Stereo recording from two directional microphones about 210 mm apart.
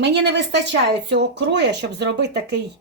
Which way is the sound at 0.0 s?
55° right (ahead or behind).